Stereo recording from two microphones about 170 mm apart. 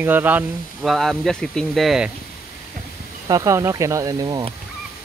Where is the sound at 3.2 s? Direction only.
20° right (ahead or behind).